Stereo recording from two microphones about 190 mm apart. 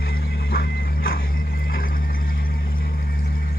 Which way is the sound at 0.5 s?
55° left (ahead or behind).